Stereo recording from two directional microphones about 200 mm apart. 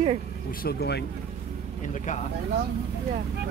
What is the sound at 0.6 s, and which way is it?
Speech, 55° left (ahead or behind).